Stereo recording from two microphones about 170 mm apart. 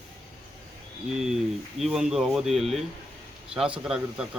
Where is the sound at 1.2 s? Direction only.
Centre (ahead or behind).